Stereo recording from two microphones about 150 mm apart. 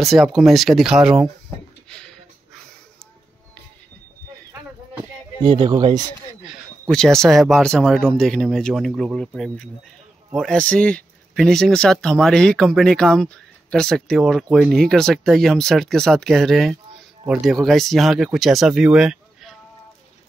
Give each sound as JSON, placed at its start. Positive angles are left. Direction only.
{"t": 0.0, "sound": "speech", "side_deg": 0}
{"t": 1.9, "sound": "a sound", "side_deg": 5}
{"t": 5.5, "sound": "speech", "side_deg": -30}
{"t": 6.4, "sound": "speech", "side_deg": 0}